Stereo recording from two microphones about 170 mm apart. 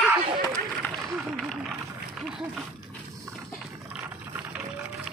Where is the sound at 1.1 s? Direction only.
5° left (ahead or behind).